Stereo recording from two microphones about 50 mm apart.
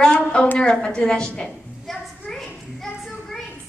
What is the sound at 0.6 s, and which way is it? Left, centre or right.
Speech, centre.